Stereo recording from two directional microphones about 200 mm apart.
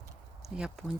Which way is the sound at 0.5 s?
5° right (ahead or behind).